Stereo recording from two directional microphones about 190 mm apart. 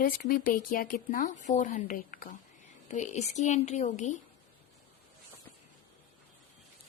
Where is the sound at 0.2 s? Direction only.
50° left (ahead or behind).